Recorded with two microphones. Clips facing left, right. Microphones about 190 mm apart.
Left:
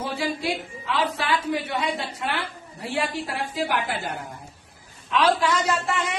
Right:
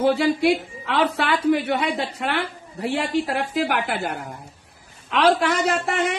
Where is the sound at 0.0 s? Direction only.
60° right (ahead or behind).